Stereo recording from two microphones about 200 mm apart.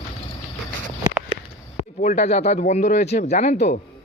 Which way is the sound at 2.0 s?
35° left (ahead or behind).